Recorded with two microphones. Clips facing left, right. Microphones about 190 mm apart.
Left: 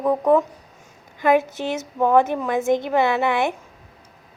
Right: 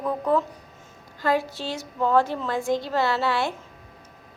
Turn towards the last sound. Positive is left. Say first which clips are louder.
# left 4 dB
turn(degrees=20)  # may be behind; listen again after turning